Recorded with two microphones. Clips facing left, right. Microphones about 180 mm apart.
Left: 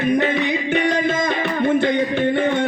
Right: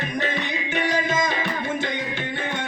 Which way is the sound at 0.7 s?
60° left (ahead or behind).